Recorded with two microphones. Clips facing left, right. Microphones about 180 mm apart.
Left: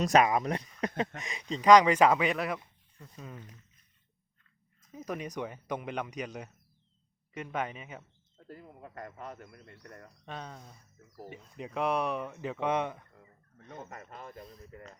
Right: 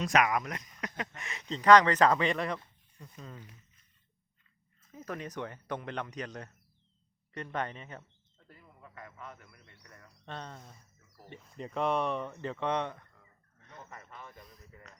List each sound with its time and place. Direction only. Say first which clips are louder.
0.0 s speech: left 4 dB; 30° left (ahead or behind)
0.9 s speech: left 7 dB; 20° left (ahead or behind)
4.8 s speech: left 3 dB; 15° left (ahead or behind)
8.4 s speech: left 8 dB; 45° left (ahead or behind)
9.6 s speech: left 8 dB; 55° left (ahead or behind)
10.2 s speech: even; 5° left (ahead or behind)
13.9 s speech: left 4 dB; 50° left (ahead or behind)